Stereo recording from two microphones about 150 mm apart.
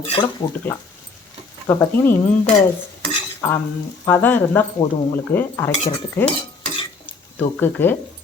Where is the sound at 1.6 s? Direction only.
15° left (ahead or behind).